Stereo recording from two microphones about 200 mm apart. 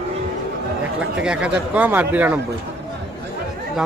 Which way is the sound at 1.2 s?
5° right (ahead or behind).